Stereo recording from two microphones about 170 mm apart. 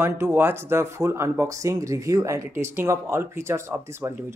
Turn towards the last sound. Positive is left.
turn(degrees=-15)  # may be behind; listen again after turning